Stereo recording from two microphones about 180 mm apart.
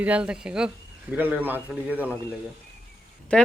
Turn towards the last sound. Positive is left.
turn(degrees=5)  # may be behind; listen again after turning